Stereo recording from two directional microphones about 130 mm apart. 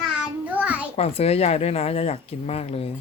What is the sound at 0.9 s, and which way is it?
Speech, 50° left (ahead or behind).